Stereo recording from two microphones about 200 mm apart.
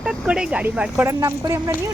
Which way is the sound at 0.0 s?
5° right (ahead or behind).